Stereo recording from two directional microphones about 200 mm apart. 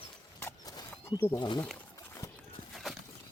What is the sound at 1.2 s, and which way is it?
Speech, 20° left (ahead or behind).